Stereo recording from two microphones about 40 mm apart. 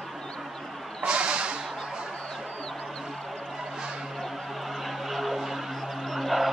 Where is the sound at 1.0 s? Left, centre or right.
Right.